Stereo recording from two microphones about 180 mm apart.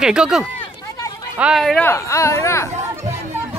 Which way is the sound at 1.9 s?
15° left (ahead or behind).